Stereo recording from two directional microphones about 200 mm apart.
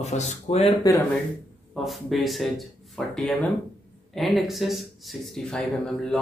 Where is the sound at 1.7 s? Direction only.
Centre (ahead or behind).